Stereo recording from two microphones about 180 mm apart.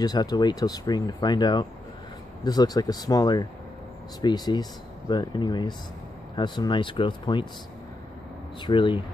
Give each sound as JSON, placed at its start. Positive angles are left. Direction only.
{"t": 0.0, "sound": "speech", "side_deg": 20}
{"t": 8.6, "sound": "speech", "side_deg": 25}